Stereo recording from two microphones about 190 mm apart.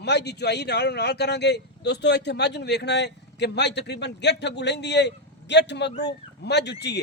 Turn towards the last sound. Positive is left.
turn(degrees=60)  # may be behind; listen again after turning